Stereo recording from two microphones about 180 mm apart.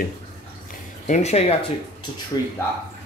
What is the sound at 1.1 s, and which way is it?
Speech, 40° left (ahead or behind).